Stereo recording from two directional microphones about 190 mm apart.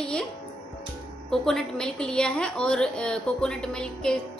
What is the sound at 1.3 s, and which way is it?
A woman's voice, centre (ahead or behind).